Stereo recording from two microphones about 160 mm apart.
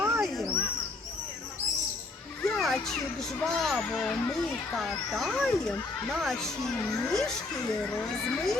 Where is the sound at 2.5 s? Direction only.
Centre (ahead or behind).